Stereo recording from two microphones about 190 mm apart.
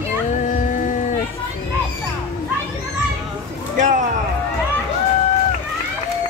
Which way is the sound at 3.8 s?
45° right (ahead or behind).